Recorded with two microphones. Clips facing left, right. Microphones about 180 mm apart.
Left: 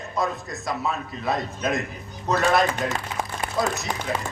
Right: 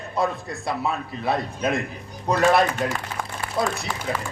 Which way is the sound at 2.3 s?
10° right (ahead or behind).